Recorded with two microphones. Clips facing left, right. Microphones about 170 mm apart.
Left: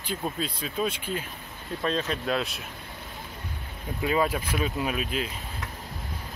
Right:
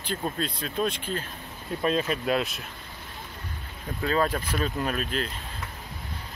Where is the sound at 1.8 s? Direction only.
5° right (ahead or behind).